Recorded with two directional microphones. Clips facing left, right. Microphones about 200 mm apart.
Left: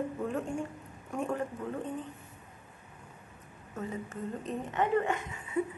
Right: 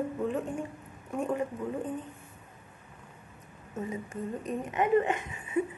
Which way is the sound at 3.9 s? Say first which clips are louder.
Right 2 dB; 15° right (ahead or behind).